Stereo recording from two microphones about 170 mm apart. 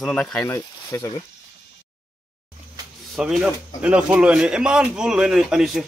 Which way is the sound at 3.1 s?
5° right (ahead or behind).